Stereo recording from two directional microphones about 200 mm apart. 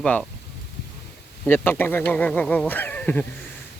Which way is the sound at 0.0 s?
5° left (ahead or behind).